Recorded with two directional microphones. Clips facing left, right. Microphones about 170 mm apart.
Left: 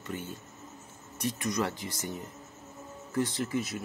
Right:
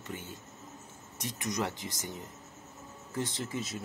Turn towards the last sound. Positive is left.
turn(degrees=-25)  # may be behind; listen again after turning